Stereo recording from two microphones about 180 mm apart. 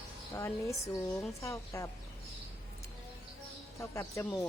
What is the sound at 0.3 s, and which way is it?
Speech, 15° left (ahead or behind).